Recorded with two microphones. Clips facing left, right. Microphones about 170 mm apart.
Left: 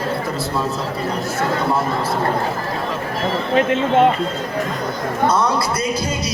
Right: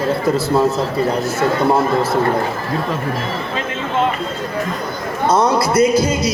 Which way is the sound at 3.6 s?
60° left (ahead or behind).